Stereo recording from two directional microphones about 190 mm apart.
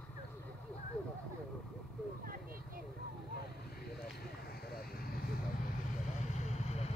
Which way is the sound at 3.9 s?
55° left (ahead or behind).